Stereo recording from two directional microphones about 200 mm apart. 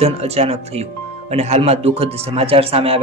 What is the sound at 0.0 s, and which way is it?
Speech, 30° right (ahead or behind).